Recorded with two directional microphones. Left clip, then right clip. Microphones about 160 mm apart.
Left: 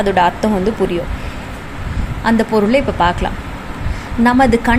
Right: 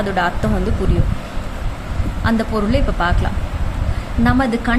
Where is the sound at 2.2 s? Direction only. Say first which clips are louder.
Left 6 dB; 15° left (ahead or behind).